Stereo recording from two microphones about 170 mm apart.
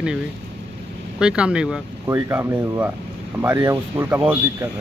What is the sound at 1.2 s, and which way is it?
Speech, 5° right (ahead or behind).